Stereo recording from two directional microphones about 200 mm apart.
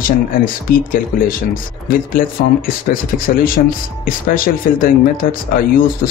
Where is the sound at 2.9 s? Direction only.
45° left (ahead or behind).